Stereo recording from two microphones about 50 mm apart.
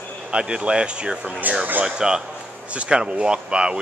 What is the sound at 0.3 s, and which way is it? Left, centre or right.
Speech, centre.